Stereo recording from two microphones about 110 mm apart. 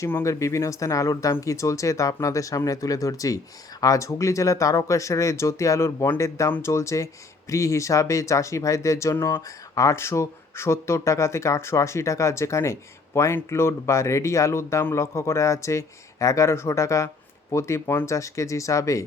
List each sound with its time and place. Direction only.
0.0 s speech: 25° left (ahead or behind)